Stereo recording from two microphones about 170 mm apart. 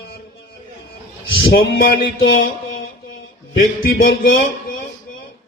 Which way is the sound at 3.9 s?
60° left (ahead or behind).